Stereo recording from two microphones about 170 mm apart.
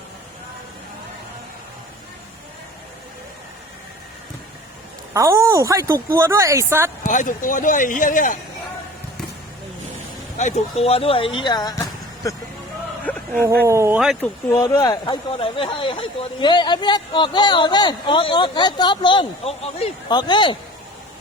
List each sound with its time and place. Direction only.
5.1 s speech: 15° right (ahead or behind)
7.1 s speech: 50° left (ahead or behind)
10.3 s speech: 45° left (ahead or behind); by 12.4 s 20° left (ahead or behind)
13.1 s dog: 10° left (ahead or behind)
13.7 s speech: 15° right (ahead or behind)
14.2 s speech: 20° left (ahead or behind); by 19.9 s 35° left (ahead or behind)
20.1 s speech: 25° left (ahead or behind)